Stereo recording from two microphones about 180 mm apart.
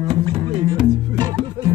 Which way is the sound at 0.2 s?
25° right (ahead or behind).